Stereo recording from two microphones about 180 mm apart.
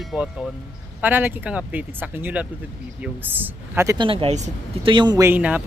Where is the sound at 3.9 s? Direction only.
30° right (ahead or behind).